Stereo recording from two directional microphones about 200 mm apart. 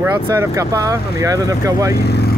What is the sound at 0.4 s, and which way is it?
Speech, 15° right (ahead or behind).